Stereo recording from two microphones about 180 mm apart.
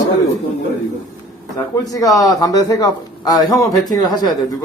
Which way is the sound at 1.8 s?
20° left (ahead or behind).